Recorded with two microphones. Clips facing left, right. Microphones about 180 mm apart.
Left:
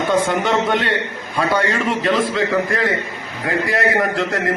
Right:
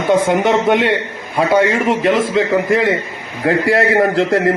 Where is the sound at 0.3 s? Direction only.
20° right (ahead or behind).